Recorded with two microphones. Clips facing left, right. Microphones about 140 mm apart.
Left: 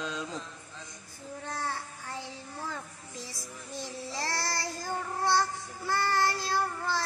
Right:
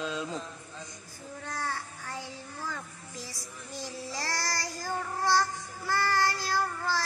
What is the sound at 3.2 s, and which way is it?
Child singing, 25° left (ahead or behind).